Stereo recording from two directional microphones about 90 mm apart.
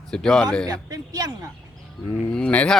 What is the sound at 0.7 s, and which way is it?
Speech, 45° right (ahead or behind).